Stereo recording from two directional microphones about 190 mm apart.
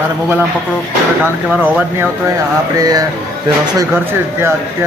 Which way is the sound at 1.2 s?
10° right (ahead or behind).